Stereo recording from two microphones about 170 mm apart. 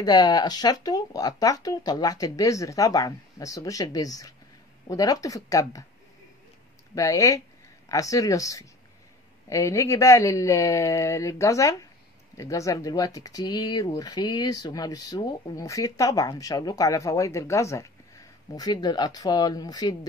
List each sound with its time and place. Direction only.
0.0 s speech: 25° left (ahead or behind)
7.0 s speech: 20° left (ahead or behind)